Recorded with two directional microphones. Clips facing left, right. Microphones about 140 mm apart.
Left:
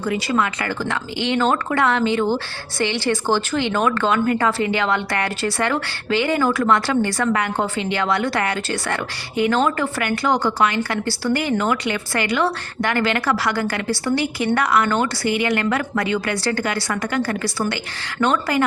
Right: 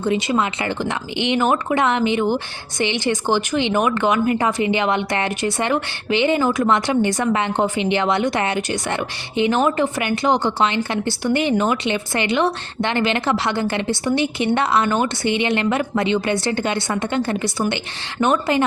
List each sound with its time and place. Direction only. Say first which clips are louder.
0.0 s speech: right 1 dB; 20° right (ahead or behind)